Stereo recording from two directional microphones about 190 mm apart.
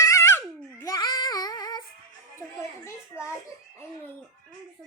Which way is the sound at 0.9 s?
20° left (ahead or behind).